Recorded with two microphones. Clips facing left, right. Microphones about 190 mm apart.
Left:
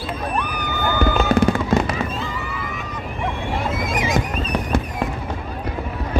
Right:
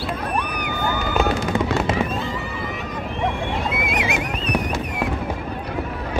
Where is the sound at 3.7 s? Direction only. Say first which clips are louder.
Left 2 dB; 65° right (ahead or behind).